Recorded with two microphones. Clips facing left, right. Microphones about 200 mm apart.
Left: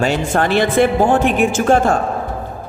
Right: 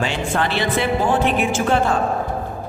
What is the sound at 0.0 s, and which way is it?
A woman's voice, 45° left (ahead or behind).